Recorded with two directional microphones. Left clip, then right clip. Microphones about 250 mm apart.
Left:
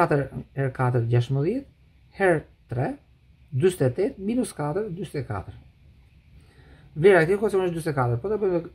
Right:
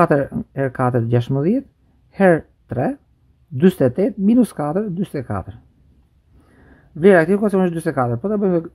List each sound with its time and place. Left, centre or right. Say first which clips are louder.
0.0 s speech: right 7 dB; right
7.0 s speech: right 5 dB; right